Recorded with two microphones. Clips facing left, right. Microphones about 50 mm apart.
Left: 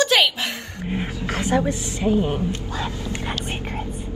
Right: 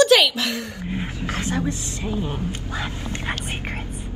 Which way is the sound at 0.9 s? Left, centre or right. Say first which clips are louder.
Left 2 dB; left.